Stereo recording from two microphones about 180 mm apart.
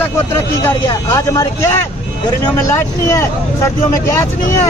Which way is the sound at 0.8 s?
20° left (ahead or behind).